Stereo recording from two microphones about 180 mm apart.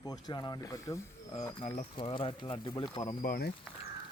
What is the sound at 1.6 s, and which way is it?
Speech, 30° left (ahead or behind).